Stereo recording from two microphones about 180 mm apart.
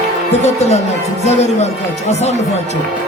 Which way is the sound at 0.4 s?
35° left (ahead or behind).